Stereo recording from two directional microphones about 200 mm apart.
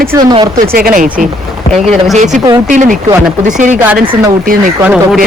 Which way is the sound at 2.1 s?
35° right (ahead or behind).